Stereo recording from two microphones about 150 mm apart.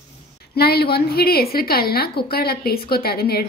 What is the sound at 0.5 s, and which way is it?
A woman's voice, 90° left.